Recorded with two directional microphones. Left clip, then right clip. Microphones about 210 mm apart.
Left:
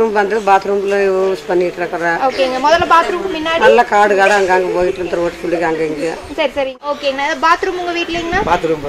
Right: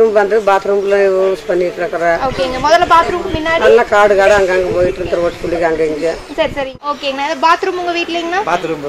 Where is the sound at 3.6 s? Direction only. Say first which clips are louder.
Right 1 dB; 25° left (ahead or behind).